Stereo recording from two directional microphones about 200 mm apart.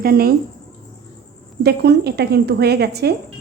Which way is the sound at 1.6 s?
55° right (ahead or behind).